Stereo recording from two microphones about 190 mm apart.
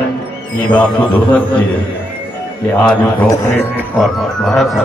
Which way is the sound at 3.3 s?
10° left (ahead or behind).